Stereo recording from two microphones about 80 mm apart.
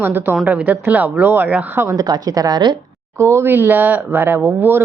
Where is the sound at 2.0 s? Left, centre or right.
Right.